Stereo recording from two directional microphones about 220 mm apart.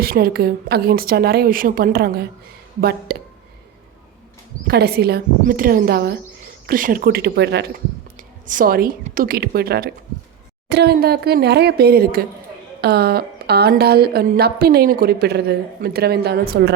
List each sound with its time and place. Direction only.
0.0 s speech: 45° right (ahead or behind)
4.7 s speech: 45° right (ahead or behind)
8.1 s a woman's voice: 35° right (ahead or behind)